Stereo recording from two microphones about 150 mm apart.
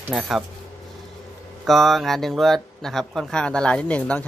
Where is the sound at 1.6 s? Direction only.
Centre (ahead or behind).